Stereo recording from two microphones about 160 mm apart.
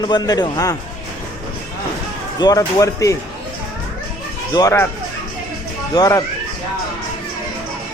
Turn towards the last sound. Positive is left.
turn(degrees=20)  # may be behind; listen again after turning